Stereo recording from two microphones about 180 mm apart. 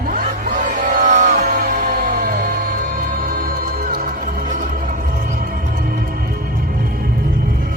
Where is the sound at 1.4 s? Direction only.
55° right (ahead or behind).